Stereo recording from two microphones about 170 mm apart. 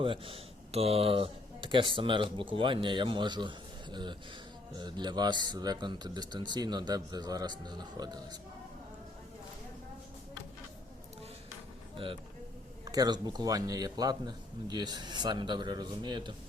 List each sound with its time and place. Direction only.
0.0 s speech: 30° right (ahead or behind)
4.8 s speech: 25° right (ahead or behind)
12.8 s speech: 20° right (ahead or behind)